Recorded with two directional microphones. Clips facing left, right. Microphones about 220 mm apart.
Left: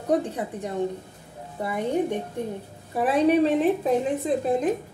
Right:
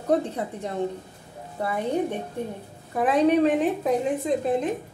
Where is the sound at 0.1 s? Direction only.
15° left (ahead or behind).